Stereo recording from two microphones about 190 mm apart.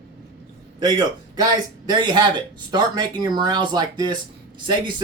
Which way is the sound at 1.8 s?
25° right (ahead or behind).